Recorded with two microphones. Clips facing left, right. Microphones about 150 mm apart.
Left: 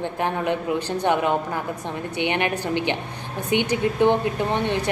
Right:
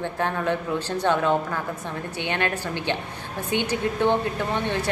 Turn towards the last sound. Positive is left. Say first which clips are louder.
# left 3 dB
turn(degrees=15)  # may be behind; listen again after turning